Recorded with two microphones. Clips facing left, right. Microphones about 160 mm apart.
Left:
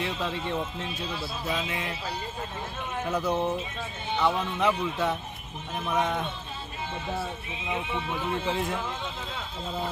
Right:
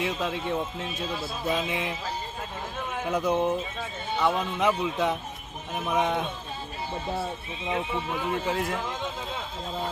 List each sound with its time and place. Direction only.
0.0 s speech: 5° right (ahead or behind)
1.5 s speech: 20° right (ahead or behind)
3.0 s speech: 15° right (ahead or behind)